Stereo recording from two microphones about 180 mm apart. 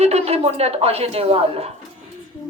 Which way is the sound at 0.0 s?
35° right (ahead or behind).